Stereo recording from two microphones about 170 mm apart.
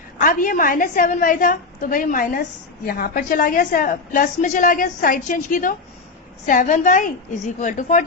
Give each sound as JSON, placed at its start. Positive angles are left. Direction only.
{"t": 0.2, "sound": "a woman's voice", "side_deg": 55}